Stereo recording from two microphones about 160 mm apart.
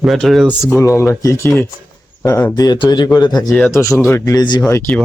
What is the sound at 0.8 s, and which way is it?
Speech, 15° left (ahead or behind).